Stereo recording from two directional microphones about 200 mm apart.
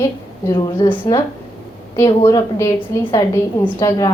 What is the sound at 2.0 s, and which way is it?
A woman's voice, 15° left (ahead or behind).